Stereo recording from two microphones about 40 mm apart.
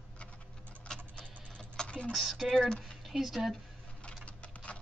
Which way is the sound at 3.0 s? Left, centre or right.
Centre.